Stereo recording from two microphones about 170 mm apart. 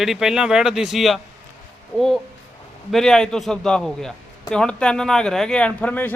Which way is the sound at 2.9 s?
5° left (ahead or behind).